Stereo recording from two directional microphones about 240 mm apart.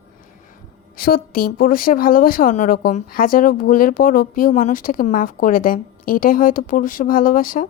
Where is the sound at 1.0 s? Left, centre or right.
Left.